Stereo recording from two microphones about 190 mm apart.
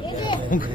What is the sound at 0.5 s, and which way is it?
Speech, 45° left (ahead or behind).